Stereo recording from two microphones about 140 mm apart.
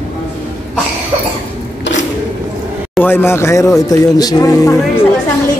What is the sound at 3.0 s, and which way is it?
Speech, 15° left (ahead or behind).